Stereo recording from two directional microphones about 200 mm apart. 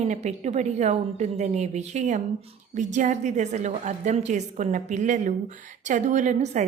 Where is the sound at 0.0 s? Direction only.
35° right (ahead or behind).